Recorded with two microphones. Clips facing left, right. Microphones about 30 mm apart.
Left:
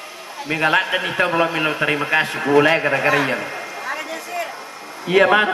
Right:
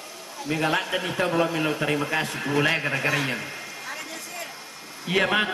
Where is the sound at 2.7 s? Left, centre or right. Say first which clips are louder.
Left 7 dB; left.